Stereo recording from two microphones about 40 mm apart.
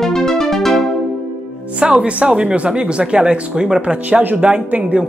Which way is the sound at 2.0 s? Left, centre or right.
Right.